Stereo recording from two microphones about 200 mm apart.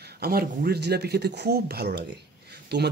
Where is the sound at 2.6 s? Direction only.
55° right (ahead or behind).